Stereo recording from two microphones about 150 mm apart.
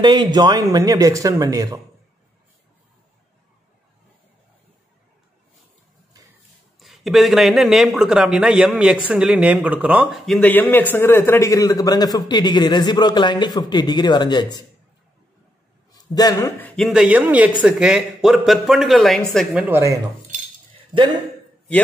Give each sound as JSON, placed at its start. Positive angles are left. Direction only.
{"t": 0.0, "sound": "speech", "side_deg": -30}
{"t": 6.8, "sound": "speech", "side_deg": 0}
{"t": 10.5, "sound": "a man's voice", "side_deg": 15}
{"t": 16.0, "sound": "a man's voice", "side_deg": 25}
{"t": 16.7, "sound": "speech", "side_deg": 0}
{"t": 19.7, "sound": "speech", "side_deg": -20}
{"t": 20.7, "sound": "a sound", "side_deg": -35}